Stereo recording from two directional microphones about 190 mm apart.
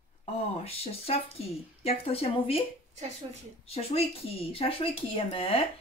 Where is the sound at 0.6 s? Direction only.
30° left (ahead or behind).